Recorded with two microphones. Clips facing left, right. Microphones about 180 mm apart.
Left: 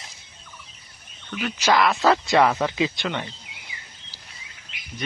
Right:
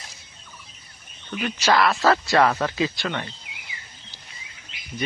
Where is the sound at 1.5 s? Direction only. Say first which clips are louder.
Even; 15° left (ahead or behind).